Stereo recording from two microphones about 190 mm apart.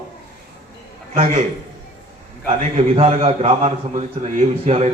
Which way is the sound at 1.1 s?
35° right (ahead or behind).